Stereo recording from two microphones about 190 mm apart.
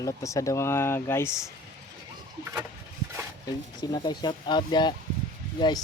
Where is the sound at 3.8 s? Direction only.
20° left (ahead or behind).